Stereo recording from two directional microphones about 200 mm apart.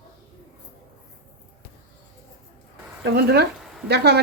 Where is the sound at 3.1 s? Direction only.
55° right (ahead or behind).